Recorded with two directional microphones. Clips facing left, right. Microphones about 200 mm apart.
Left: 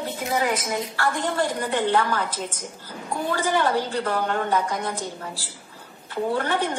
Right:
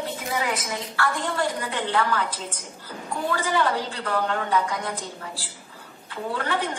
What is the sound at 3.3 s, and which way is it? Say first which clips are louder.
A woman's voice: left 2 dB; 40° left (ahead or behind).